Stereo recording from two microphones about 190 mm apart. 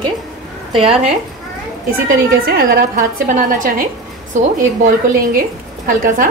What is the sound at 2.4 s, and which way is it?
A woman's voice, 55° right (ahead or behind).